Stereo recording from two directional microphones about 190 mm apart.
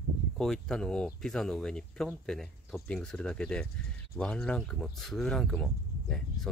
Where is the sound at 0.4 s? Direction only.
Centre (ahead or behind).